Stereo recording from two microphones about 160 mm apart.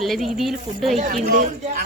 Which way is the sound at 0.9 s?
50° right (ahead or behind).